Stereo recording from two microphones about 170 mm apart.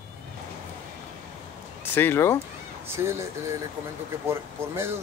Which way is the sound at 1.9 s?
15° left (ahead or behind).